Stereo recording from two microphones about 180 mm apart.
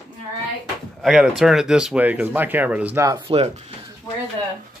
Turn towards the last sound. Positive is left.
turn(degrees=15)  # may be behind; listen again after turning